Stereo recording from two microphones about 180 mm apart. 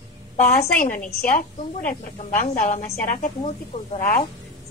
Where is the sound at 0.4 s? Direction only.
45° left (ahead or behind).